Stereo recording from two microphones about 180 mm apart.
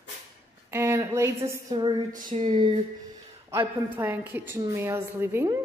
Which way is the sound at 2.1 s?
45° right (ahead or behind).